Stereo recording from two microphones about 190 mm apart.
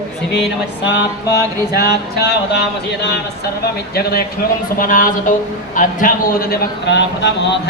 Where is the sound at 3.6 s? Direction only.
55° left (ahead or behind).